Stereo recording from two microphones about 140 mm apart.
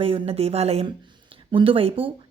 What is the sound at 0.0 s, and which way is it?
A woman's voice, 45° right (ahead or behind).